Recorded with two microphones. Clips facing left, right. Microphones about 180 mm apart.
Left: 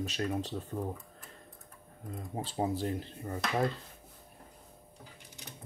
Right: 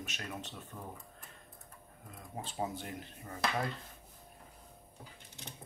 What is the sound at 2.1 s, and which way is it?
Speech, 35° left (ahead or behind).